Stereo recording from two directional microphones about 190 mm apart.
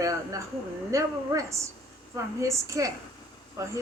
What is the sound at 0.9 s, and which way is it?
A woman's voice, 15° right (ahead or behind).